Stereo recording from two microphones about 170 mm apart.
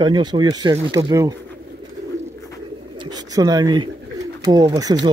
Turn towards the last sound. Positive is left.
turn(degrees=-20)  # may be behind; listen again after turning